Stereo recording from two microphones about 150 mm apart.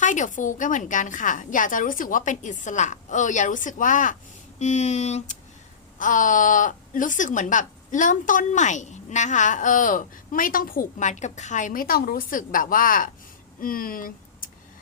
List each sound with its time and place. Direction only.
0.0 s speech: 55° left (ahead or behind)
6.0 s speech: 60° left (ahead or behind)